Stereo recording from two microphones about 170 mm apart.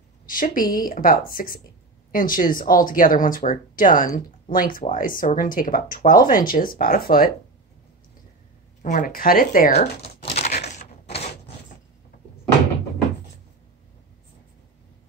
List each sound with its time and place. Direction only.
0.3 s speech: 55° left (ahead or behind)
8.8 s speech: 50° left (ahead or behind)
9.7 s crumpling: 40° left (ahead or behind)
10.7 s typewriter: 40° left (ahead or behind)